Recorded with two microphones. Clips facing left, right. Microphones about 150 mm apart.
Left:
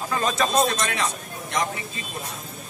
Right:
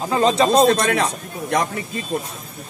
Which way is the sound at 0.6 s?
60° right (ahead or behind).